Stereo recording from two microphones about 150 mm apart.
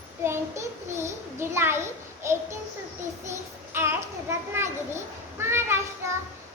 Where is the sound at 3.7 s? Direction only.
15° right (ahead or behind).